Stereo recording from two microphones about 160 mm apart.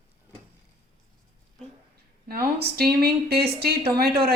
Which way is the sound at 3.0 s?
75° right (ahead or behind).